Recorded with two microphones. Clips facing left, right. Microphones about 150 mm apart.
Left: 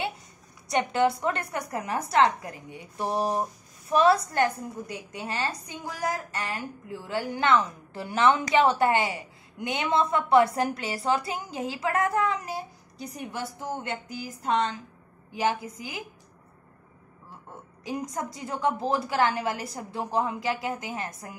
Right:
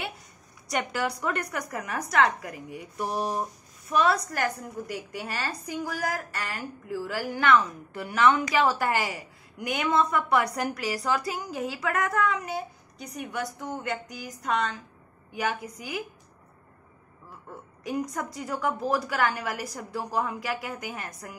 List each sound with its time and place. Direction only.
0.7 s a woman's voice: 25° left (ahead or behind)
17.8 s a woman's voice: 25° left (ahead or behind)